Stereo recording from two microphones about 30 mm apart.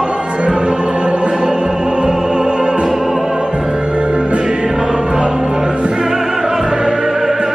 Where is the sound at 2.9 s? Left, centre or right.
Centre.